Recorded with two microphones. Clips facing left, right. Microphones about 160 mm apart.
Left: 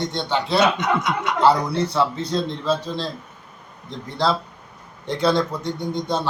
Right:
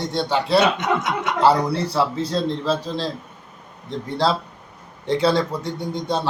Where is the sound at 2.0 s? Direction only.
5° right (ahead or behind).